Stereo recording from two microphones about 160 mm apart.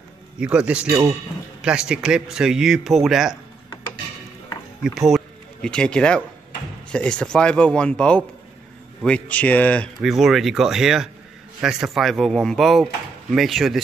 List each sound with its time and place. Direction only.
0.4 s speech: 5° right (ahead or behind)
4.8 s speech: centre (ahead or behind)
10.0 s speech: centre (ahead or behind)